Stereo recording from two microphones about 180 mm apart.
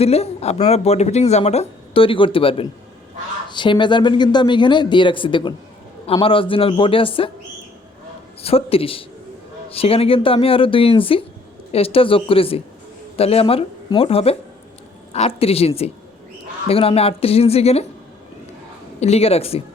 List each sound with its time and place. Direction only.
0.0 s speech: 35° left (ahead or behind)
8.4 s speech: 30° left (ahead or behind)
18.9 s speech: 35° left (ahead or behind)